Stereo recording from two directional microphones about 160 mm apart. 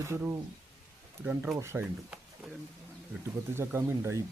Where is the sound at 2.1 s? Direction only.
5° right (ahead or behind).